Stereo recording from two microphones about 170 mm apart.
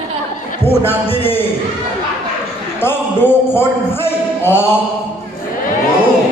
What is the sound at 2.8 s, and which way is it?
Speech, 15° left (ahead or behind).